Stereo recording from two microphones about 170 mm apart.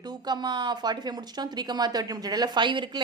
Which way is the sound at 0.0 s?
25° right (ahead or behind).